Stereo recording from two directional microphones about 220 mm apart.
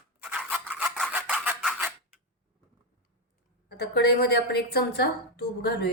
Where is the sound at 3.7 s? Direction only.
50° left (ahead or behind).